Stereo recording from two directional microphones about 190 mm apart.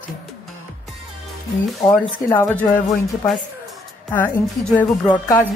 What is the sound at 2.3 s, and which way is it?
Speech, 10° left (ahead or behind).